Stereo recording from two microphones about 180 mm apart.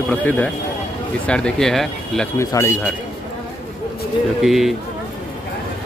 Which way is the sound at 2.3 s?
15° left (ahead or behind).